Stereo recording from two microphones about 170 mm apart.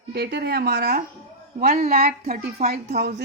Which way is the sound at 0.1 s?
80° right.